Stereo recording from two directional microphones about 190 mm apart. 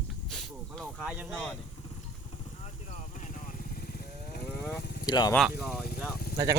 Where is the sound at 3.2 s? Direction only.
40° left (ahead or behind).